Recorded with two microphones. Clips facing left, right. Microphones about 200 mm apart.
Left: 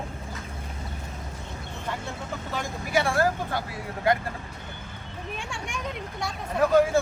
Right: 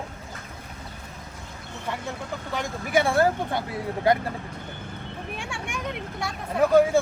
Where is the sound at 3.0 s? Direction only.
25° right (ahead or behind).